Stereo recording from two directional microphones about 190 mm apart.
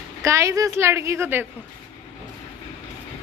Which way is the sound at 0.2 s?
15° right (ahead or behind).